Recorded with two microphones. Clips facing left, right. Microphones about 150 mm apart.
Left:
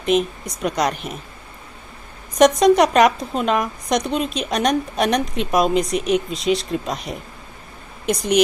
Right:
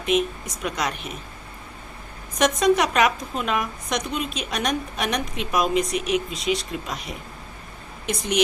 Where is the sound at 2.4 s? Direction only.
35° left (ahead or behind).